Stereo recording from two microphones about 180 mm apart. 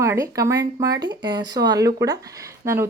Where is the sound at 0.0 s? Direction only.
15° right (ahead or behind).